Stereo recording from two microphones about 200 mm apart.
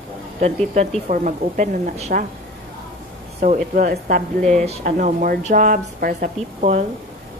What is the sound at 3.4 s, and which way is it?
A woman's voice, 40° right (ahead or behind).